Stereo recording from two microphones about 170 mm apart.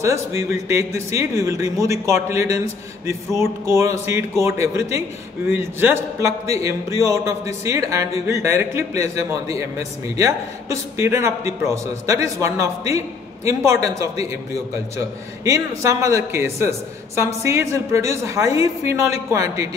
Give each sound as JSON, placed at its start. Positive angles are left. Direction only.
{"t": 0.0, "sound": "a man's voice", "side_deg": -15}